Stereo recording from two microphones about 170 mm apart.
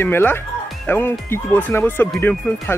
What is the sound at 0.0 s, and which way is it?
Speech, 10° left (ahead or behind).